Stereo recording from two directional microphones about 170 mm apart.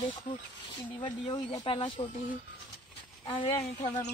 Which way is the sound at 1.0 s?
30° left (ahead or behind).